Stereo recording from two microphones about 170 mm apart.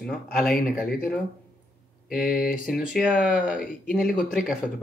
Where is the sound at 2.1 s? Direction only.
5° right (ahead or behind).